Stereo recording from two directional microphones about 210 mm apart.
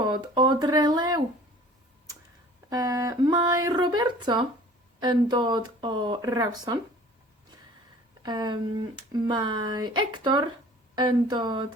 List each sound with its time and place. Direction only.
0.0 s speech: 20° right (ahead or behind)
2.6 s speech: 15° right (ahead or behind)
8.2 s speech: 20° right (ahead or behind)